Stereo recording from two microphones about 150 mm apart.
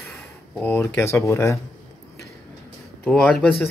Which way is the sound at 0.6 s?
15° left (ahead or behind).